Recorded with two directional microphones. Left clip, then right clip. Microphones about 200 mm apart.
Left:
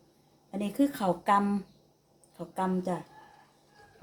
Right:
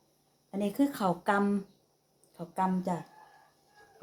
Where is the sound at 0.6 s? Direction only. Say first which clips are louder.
Left 1 dB; 15° right (ahead or behind).